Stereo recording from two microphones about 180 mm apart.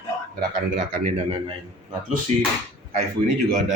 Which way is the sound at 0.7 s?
50° right (ahead or behind).